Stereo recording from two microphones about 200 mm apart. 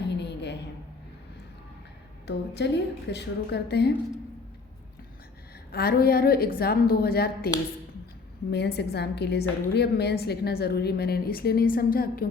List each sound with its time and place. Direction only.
0.2 s a sound: 60° left (ahead or behind)
2.2 s a woman's voice: 60° left (ahead or behind)
5.7 s a woman's voice: 50° left (ahead or behind)